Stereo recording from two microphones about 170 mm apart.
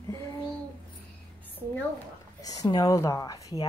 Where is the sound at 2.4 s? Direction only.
20° left (ahead or behind).